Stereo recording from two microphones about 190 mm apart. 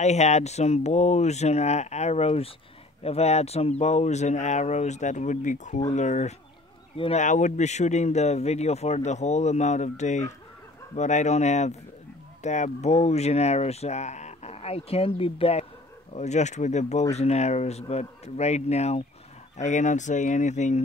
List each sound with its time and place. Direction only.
0.0 s speech: 35° left (ahead or behind)